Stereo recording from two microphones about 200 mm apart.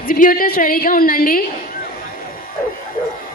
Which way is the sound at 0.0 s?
45° left (ahead or behind).